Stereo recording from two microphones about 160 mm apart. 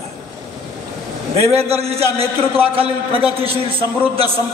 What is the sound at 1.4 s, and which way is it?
A man's voice, 40° right (ahead or behind).